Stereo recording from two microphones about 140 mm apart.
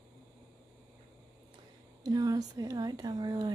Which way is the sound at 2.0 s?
25° right (ahead or behind).